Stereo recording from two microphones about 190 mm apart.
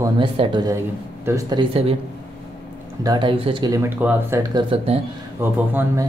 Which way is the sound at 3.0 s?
20° right (ahead or behind).